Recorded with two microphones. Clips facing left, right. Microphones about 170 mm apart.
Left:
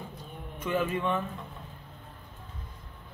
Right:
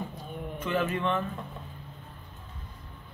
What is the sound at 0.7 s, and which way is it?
Speech, 10° left (ahead or behind).